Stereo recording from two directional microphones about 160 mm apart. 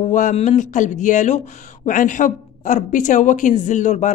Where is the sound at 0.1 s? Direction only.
50° left (ahead or behind).